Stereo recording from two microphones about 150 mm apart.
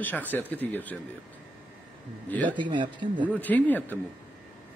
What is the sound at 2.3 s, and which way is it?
Speech, 10° left (ahead or behind).